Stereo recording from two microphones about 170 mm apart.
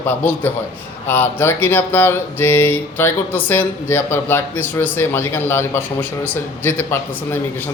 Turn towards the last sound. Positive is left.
turn(degrees=15)  # may be behind; listen again after turning